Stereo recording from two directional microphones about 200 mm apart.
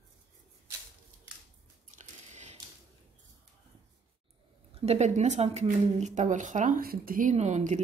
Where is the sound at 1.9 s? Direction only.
35° right (ahead or behind).